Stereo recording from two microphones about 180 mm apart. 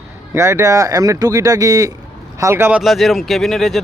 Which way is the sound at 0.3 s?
15° right (ahead or behind).